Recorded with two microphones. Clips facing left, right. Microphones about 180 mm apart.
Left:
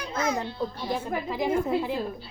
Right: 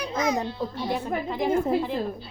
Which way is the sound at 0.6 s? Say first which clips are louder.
Right 1 dB; centre (ahead or behind).